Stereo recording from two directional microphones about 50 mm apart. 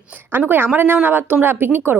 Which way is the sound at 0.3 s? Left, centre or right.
Right.